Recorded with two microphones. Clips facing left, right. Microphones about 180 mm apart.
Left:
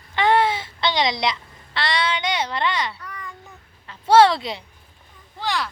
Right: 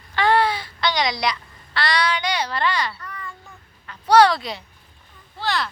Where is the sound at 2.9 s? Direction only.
10° left (ahead or behind).